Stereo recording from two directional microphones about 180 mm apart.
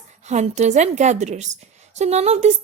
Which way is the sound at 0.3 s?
40° right (ahead or behind).